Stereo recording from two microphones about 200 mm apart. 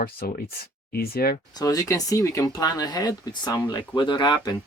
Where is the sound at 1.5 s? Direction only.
20° left (ahead or behind).